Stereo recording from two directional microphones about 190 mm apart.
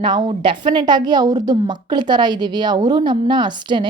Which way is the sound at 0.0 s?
25° right (ahead or behind).